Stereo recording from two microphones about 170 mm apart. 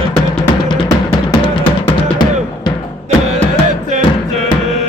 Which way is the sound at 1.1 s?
25° left (ahead or behind).